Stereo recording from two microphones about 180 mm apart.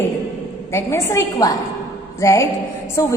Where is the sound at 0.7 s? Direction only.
15° left (ahead or behind).